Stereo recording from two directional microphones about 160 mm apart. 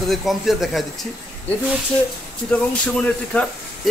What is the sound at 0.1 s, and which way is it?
Speech, centre (ahead or behind).